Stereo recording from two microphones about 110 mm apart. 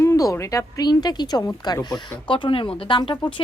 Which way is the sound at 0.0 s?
30° left (ahead or behind).